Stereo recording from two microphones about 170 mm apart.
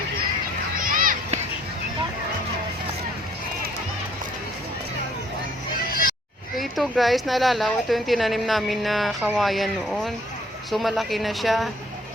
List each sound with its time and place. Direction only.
0.8 s a sound: 55° right (ahead or behind)
5.7 s music: 60° left (ahead or behind)
6.6 s a woman's voice: centre (ahead or behind)